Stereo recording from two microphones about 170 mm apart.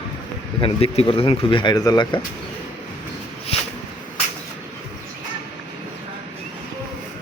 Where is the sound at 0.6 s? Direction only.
35° left (ahead or behind).